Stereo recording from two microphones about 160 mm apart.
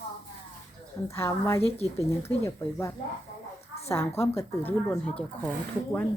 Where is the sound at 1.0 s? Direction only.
15° left (ahead or behind).